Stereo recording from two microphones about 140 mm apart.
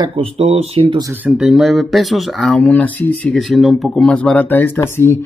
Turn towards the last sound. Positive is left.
turn(degrees=15)  # may be behind; listen again after turning